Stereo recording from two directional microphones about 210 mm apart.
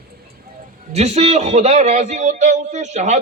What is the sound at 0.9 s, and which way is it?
A man's voice, 30° right (ahead or behind).